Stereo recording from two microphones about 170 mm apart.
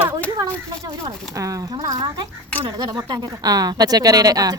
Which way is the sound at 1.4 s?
20° right (ahead or behind).